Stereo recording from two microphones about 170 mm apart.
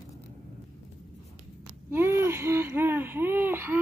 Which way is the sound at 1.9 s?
15° right (ahead or behind).